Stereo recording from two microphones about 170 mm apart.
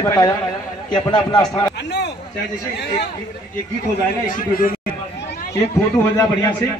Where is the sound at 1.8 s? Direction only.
85° left.